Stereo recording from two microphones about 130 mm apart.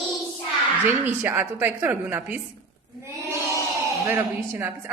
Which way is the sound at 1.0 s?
15° right (ahead or behind).